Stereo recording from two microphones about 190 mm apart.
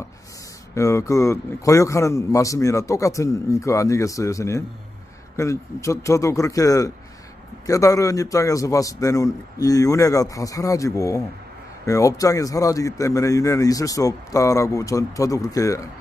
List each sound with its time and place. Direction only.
0.7 s a man's voice: 15° left (ahead or behind)